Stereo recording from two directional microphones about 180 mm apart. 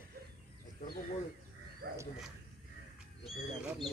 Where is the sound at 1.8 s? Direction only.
65° right (ahead or behind).